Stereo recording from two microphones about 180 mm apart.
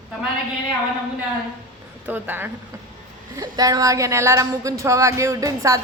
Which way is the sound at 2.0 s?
10° right (ahead or behind).